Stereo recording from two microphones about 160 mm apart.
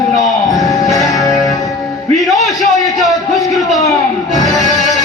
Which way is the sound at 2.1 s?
Centre (ahead or behind).